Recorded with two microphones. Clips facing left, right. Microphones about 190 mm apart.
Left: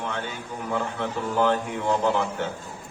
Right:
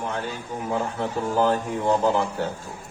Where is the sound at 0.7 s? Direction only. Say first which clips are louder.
Right 1 dB; 35° right (ahead or behind).